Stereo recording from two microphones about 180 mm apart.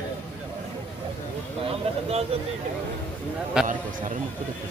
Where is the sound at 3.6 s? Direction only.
5° right (ahead or behind).